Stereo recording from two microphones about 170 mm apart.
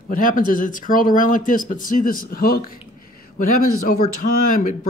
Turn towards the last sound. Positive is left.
turn(degrees=50)  # may be behind; listen again after turning